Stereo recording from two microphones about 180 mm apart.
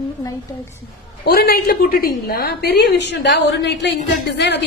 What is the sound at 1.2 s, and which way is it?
A woman's voice, 60° left (ahead or behind).